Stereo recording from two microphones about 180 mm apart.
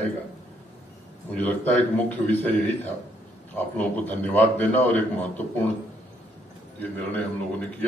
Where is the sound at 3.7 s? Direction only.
10° left (ahead or behind).